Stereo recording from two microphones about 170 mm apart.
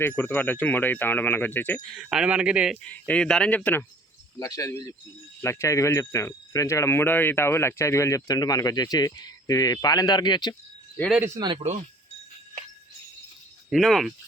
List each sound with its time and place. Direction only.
0.0 s speech: 15° left (ahead or behind); by 2.7 s 5° right (ahead or behind)
2.8 s speech: 5° left (ahead or behind)
4.4 s speech: 20° left (ahead or behind)
11.5 s speech: 40° right (ahead or behind)
13.7 s speech: centre (ahead or behind)